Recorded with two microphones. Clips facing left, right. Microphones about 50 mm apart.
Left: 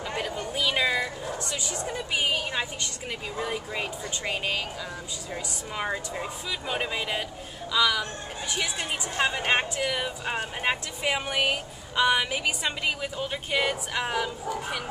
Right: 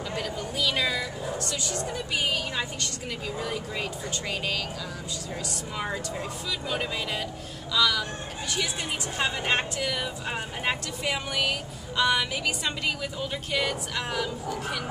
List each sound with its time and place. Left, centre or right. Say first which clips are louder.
0.1 s a woman's voice: left 2 dB; centre
9.1 s a woman's voice: left 2 dB; centre